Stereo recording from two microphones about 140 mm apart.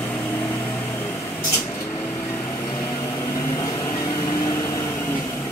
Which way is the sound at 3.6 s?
25° left (ahead or behind).